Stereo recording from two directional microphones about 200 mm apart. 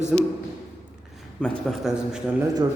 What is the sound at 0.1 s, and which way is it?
Speech, centre (ahead or behind).